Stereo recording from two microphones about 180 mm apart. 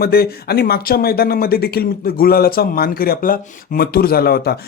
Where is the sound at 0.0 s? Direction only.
60° left (ahead or behind).